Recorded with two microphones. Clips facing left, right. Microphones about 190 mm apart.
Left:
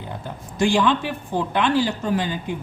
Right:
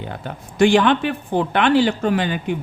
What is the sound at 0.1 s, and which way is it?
Speech, 70° right (ahead or behind).